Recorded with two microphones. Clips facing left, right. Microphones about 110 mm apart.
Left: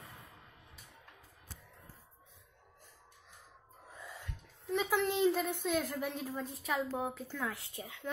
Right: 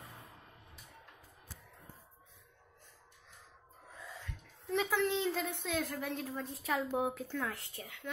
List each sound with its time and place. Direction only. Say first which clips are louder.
4.6 s a sound: even; centre (ahead or behind)
5.1 s a woman's voice: left 4 dB; 5° left (ahead or behind)
6.9 s speech: right 3 dB; 10° right (ahead or behind)
7.2 s a woman's voice: right 1 dB; 5° left (ahead or behind)
7.7 s speech: left 3 dB; 20° left (ahead or behind)